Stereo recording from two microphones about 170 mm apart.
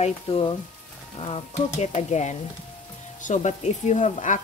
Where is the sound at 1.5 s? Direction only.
45° left (ahead or behind).